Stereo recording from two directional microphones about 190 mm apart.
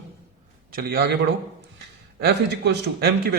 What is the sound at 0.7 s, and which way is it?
Speech, 50° right (ahead or behind).